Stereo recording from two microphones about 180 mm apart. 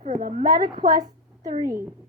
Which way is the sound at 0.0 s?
45° right (ahead or behind).